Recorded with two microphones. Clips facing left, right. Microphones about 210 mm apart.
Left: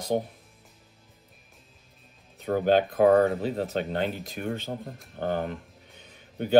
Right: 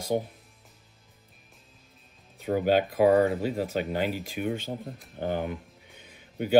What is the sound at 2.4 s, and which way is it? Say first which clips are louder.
Speech: left 1 dB; 10° right (ahead or behind).